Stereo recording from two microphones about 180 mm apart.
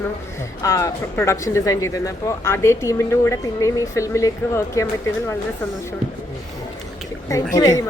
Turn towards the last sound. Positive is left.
turn(degrees=20)  # may be behind; listen again after turning